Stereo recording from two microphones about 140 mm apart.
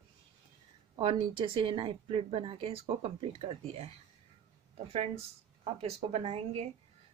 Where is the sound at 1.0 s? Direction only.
40° right (ahead or behind).